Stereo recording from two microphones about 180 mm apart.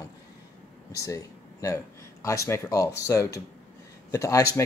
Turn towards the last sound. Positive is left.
turn(degrees=15)  # may be behind; listen again after turning